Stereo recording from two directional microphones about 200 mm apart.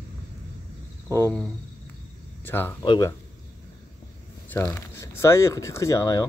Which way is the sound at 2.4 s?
10° left (ahead or behind).